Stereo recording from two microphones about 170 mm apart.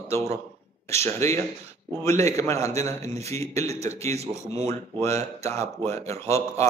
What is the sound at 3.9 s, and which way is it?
Speech, 15° left (ahead or behind).